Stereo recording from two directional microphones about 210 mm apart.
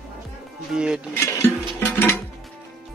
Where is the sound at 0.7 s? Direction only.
5° right (ahead or behind).